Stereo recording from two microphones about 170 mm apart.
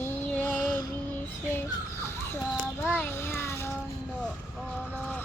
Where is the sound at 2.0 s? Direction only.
15° left (ahead or behind).